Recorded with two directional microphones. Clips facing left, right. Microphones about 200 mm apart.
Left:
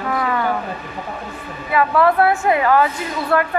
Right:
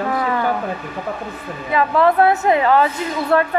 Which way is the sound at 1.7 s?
25° right (ahead or behind).